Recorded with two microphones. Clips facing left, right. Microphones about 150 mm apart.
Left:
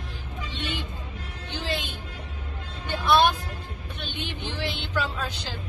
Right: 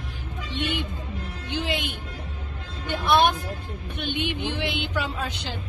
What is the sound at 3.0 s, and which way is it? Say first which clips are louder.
Speech: even; 15° right (ahead or behind).